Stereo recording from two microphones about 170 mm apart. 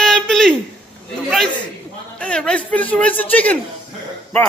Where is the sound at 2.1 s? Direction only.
5° left (ahead or behind).